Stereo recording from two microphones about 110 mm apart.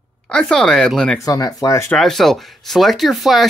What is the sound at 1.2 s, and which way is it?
Speech, 35° left (ahead or behind).